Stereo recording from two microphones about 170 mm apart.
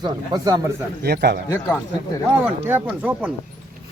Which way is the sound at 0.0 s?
20° right (ahead or behind).